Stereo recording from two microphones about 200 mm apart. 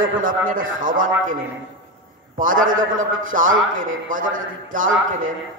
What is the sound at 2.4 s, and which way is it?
A man's voice, 45° right (ahead or behind).